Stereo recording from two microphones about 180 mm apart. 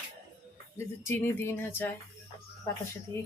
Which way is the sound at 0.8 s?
15° left (ahead or behind).